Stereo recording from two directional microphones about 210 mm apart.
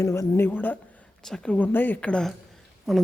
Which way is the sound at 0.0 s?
15° left (ahead or behind).